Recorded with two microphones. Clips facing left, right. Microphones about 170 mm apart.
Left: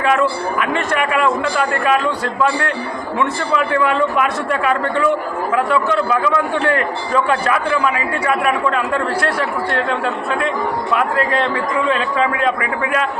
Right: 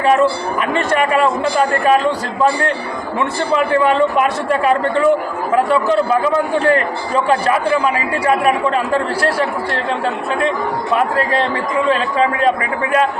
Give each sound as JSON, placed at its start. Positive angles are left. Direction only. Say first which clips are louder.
{"t": 0.0, "sound": "speech", "louder": "right 3 dB", "side_deg": -30}
{"t": 10.9, "sound": "speech", "louder": "right 2 dB", "side_deg": -30}